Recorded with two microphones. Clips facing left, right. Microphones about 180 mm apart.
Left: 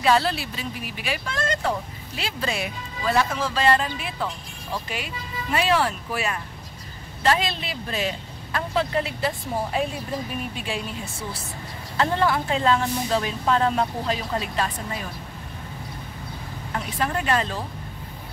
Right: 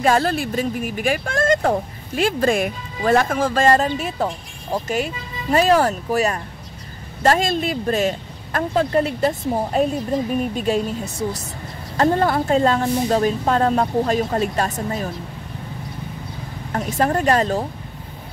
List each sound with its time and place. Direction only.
0.0 s speech: 45° right (ahead or behind)
16.7 s speech: 45° right (ahead or behind)